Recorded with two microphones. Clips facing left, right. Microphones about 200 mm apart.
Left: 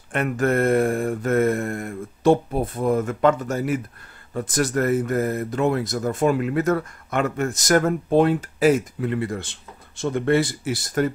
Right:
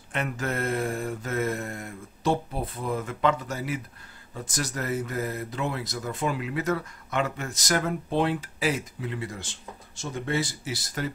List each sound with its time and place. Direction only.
0.1 s speech: 55° left (ahead or behind)